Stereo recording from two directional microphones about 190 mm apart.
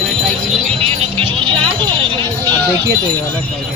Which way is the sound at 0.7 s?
30° right (ahead or behind).